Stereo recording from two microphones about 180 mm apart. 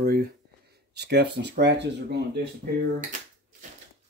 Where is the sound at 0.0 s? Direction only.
55° right (ahead or behind).